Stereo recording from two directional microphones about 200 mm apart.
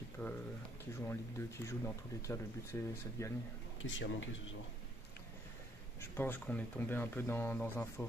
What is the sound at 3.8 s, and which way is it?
Speech, 75° left (ahead or behind).